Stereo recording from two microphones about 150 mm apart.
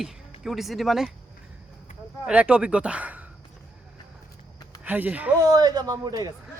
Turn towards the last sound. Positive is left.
turn(degrees=-25)  # may be behind; listen again after turning